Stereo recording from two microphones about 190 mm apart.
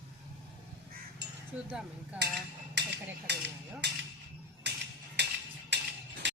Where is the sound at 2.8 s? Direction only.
65° right (ahead or behind).